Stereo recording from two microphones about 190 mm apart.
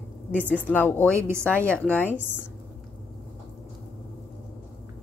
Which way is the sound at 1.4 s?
5° left (ahead or behind).